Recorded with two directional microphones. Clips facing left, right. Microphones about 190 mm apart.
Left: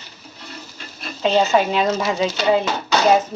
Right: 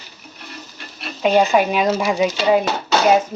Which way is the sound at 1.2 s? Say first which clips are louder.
Right 2 dB; 15° right (ahead or behind).